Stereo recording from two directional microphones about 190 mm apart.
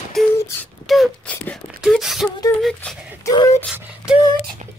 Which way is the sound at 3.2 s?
20° left (ahead or behind).